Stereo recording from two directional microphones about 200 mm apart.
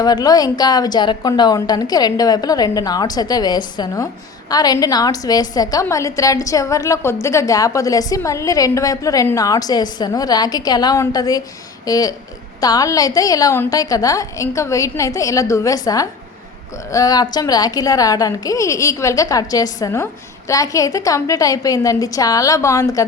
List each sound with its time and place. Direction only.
0.0 s a woman's voice: 20° left (ahead or behind)